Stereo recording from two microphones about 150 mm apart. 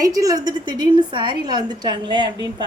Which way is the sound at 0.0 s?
25° right (ahead or behind).